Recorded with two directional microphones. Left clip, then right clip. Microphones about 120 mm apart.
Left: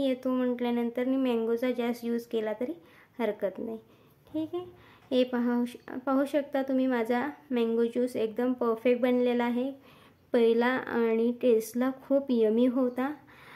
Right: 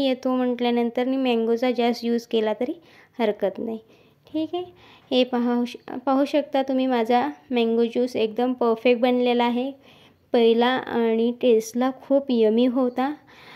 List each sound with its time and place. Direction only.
0.0 s speech: 35° right (ahead or behind)
0.7 s speech: 40° right (ahead or behind)